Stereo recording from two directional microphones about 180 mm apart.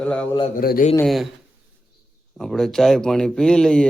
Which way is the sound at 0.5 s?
50° left (ahead or behind).